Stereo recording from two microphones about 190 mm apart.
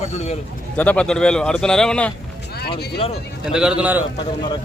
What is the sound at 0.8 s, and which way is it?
A man's voice, 5° left (ahead or behind).